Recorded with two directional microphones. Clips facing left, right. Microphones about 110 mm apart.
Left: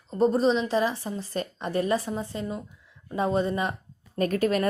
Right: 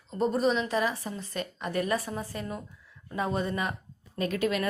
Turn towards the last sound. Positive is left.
turn(degrees=40)  # may be behind; listen again after turning